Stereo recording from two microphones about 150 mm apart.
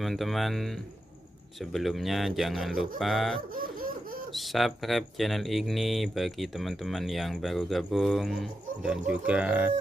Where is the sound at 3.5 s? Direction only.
70° right (ahead or behind).